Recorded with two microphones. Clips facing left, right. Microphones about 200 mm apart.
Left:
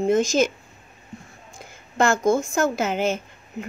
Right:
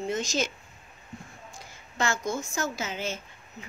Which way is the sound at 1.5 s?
55° left (ahead or behind).